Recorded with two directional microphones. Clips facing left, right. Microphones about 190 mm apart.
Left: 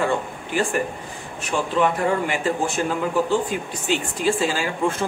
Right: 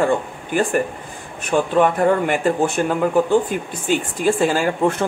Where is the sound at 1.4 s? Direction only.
50° right (ahead or behind).